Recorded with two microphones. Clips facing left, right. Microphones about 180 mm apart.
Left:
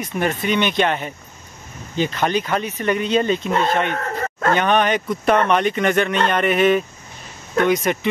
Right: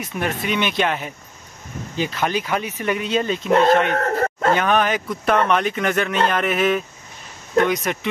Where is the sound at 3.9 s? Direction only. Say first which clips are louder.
Right 4 dB; 45° right (ahead or behind).